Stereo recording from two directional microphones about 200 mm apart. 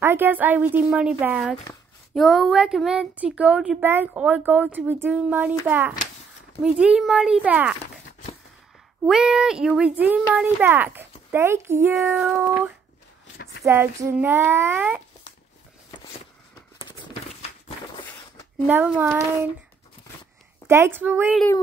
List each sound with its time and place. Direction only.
0.0 s speech: 10° right (ahead or behind)
9.0 s speech: 5° right (ahead or behind)
16.8 s a sound: 25° left (ahead or behind)
18.7 s speech: 10° right (ahead or behind)
20.6 s speech: 10° right (ahead or behind)